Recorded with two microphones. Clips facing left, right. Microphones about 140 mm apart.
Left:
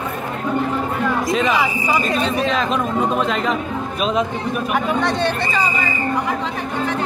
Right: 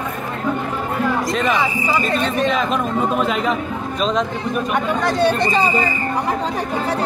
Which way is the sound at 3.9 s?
5° left (ahead or behind).